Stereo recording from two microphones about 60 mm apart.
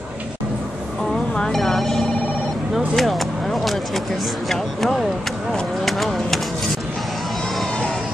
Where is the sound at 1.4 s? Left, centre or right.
Centre.